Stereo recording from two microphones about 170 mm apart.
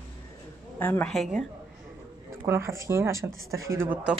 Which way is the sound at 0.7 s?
10° left (ahead or behind).